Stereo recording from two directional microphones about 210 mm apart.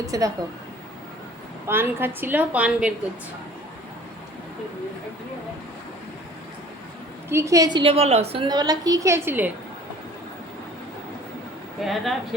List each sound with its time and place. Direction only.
0.0 s a woman's voice: 15° right (ahead or behind)
1.6 s a woman's voice: 10° right (ahead or behind)
7.3 s a woman's voice: 15° right (ahead or behind)
11.8 s speech: centre (ahead or behind)